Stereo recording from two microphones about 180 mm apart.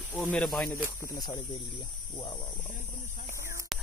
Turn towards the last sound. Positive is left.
turn(degrees=0)  # may be behind; listen again after turning